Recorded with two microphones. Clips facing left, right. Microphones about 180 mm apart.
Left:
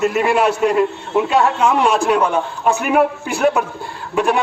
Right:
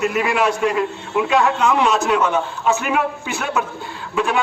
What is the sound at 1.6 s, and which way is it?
Speech, 10° left (ahead or behind).